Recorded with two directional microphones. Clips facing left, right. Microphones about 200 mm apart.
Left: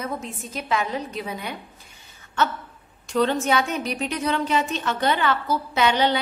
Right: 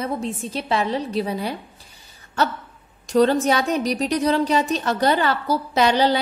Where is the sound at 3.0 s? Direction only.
40° right (ahead or behind).